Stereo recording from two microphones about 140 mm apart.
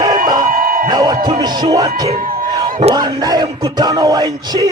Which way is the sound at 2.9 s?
30° right (ahead or behind).